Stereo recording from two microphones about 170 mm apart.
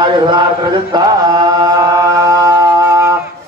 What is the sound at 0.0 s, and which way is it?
Chant, 25° right (ahead or behind).